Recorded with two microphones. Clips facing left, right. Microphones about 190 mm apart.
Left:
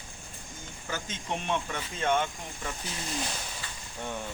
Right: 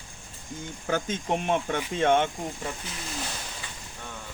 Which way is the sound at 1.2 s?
45° right (ahead or behind).